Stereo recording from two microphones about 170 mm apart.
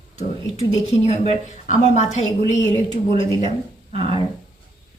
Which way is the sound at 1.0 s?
35° left (ahead or behind).